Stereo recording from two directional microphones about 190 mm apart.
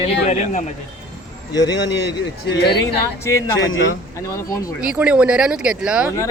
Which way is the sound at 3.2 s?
15° left (ahead or behind).